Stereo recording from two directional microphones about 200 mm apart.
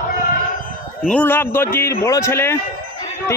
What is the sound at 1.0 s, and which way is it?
A man's voice, 10° left (ahead or behind).